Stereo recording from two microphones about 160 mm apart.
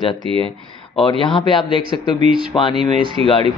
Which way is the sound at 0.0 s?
30° left (ahead or behind).